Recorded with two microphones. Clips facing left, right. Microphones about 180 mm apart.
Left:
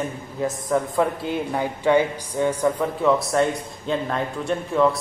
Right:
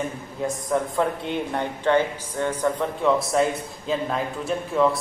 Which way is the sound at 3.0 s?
Centre (ahead or behind).